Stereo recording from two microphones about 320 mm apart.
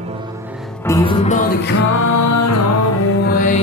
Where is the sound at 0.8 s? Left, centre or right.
Centre.